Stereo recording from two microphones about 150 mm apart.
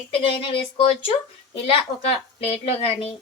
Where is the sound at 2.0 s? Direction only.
40° left (ahead or behind).